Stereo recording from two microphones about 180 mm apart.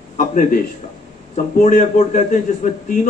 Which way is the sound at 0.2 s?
45° left (ahead or behind).